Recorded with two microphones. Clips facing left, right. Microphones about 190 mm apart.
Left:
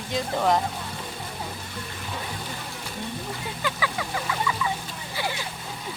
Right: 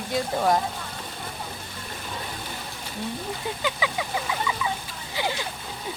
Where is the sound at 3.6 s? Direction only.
20° right (ahead or behind).